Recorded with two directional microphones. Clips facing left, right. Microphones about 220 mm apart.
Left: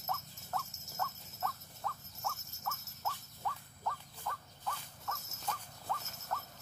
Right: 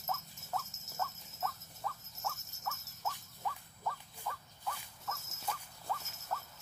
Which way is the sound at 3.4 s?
5° right (ahead or behind).